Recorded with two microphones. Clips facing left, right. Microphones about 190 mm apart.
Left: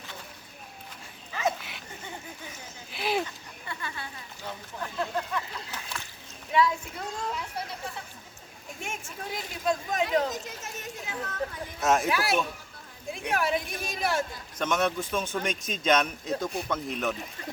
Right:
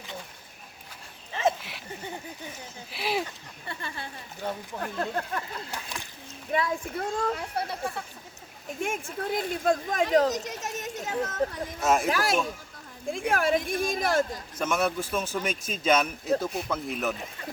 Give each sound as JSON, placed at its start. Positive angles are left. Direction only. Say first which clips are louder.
{"t": 1.3, "sound": "a sound", "louder": "right 3 dB", "side_deg": -25}
{"t": 2.9, "sound": "speech", "louder": "left 1 dB", "side_deg": 0}
{"t": 4.4, "sound": "speech", "louder": "right 5 dB", "side_deg": -50}
{"t": 11.8, "sound": "speech", "louder": "even", "side_deg": 0}
{"t": 12.1, "sound": "speech", "louder": "right 1 dB", "side_deg": -50}
{"t": 14.6, "sound": "speech", "louder": "even", "side_deg": -5}